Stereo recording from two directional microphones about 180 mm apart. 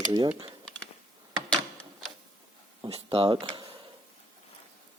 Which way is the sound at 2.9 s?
35° right (ahead or behind).